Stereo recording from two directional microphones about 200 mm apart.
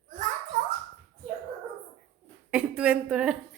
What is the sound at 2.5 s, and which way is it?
Speech, 5° right (ahead or behind).